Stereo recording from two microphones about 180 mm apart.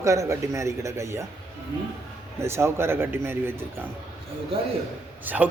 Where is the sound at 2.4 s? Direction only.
15° right (ahead or behind).